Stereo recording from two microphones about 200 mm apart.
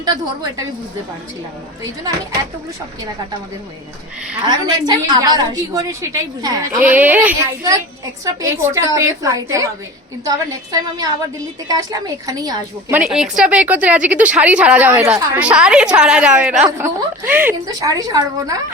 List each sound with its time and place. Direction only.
0.0 s a woman's voice: 20° right (ahead or behind)
4.4 s a woman's voice: 20° right (ahead or behind)
13.0 s a woman's voice: 5° right (ahead or behind)